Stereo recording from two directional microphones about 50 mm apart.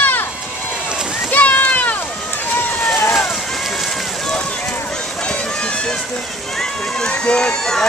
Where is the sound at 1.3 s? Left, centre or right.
Left.